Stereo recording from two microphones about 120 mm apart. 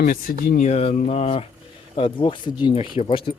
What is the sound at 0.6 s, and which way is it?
Speech, 60° left (ahead or behind).